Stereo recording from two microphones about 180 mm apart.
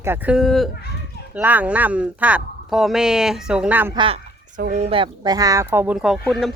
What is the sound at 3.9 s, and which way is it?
Speech, 25° right (ahead or behind).